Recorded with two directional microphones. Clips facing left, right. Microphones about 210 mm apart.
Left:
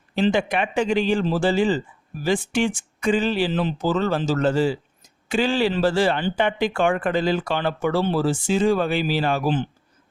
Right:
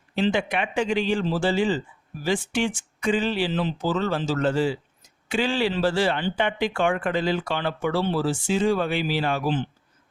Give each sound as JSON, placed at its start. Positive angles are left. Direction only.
{"t": 0.2, "sound": "speech", "side_deg": 45}